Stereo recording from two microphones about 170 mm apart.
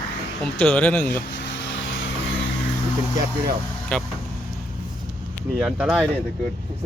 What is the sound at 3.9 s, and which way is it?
Speech, 10° left (ahead or behind).